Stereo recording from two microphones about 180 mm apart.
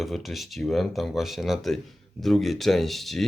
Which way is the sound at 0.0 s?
Centre (ahead or behind).